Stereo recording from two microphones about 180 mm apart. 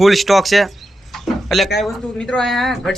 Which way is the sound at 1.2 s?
Centre (ahead or behind).